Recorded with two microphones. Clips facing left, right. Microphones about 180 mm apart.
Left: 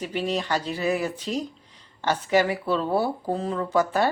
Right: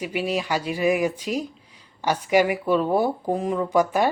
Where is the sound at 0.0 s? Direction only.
10° right (ahead or behind).